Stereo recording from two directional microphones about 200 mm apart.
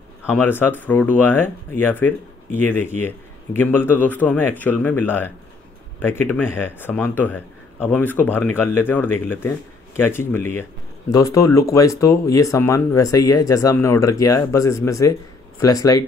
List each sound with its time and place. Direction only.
0.3 s speech: 10° left (ahead or behind)